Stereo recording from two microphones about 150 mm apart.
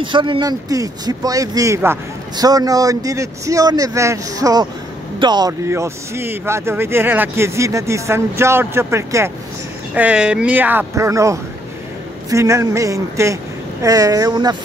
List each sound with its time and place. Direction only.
0.0 s speech: 35° right (ahead or behind)
5.5 s speech: 15° right (ahead or behind)
9.9 s speech: 5° right (ahead or behind); by 14.6 s 25° right (ahead or behind)